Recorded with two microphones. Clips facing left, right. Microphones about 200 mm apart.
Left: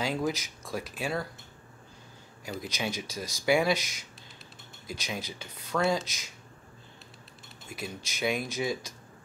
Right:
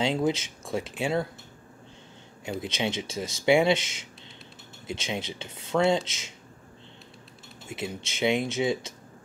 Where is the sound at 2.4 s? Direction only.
25° right (ahead or behind).